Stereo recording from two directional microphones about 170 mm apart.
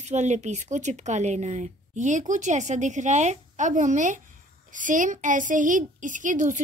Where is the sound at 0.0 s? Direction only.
45° right (ahead or behind).